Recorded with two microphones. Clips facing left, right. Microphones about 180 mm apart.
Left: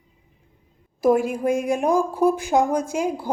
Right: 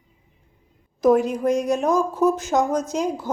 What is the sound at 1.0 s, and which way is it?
Speech, 10° left (ahead or behind).